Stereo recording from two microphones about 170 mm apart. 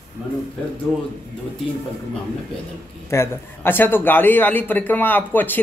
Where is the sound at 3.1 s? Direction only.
15° left (ahead or behind).